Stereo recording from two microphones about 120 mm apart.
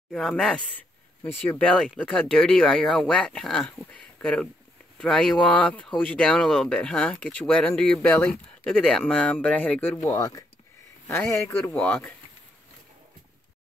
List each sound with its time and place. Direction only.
0.1 s speech: 5° left (ahead or behind)
10.0 s a man's voice: 30° left (ahead or behind)
11.1 s a man's voice: 20° left (ahead or behind)